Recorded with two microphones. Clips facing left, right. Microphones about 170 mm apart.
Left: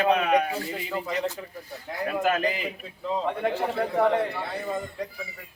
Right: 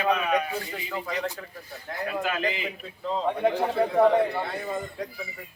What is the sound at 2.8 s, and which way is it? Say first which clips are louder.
Speech: even; 5° left (ahead or behind).